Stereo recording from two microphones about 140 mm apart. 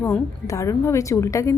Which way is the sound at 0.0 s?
20° left (ahead or behind).